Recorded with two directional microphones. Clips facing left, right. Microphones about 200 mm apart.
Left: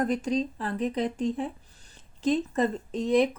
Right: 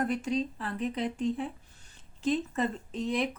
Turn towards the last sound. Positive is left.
turn(degrees=45)  # may be behind; listen again after turning